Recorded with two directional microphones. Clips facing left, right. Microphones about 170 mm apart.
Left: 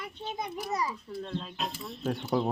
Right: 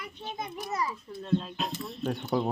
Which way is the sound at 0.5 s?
10° left (ahead or behind).